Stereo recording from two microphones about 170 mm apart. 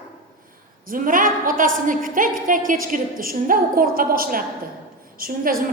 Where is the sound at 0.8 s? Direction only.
55° right (ahead or behind).